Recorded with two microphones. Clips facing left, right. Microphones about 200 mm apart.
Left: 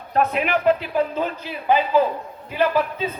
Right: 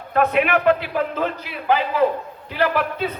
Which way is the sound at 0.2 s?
75° right (ahead or behind).